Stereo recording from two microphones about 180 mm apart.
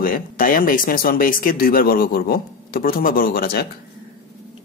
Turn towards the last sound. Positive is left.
turn(degrees=60)  # may be behind; listen again after turning